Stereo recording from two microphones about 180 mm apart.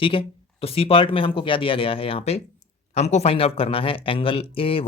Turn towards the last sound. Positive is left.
turn(degrees=30)  # may be behind; listen again after turning